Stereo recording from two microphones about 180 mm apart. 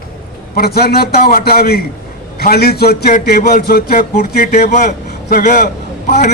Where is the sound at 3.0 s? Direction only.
50° left (ahead or behind).